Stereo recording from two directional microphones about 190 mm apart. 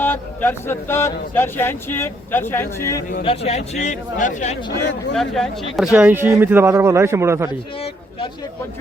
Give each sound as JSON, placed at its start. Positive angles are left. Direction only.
{"t": 0.0, "sound": "speech", "side_deg": 10}
{"t": 3.2, "sound": "a man's voice", "side_deg": 35}
{"t": 5.1, "sound": "a man's voice", "side_deg": 0}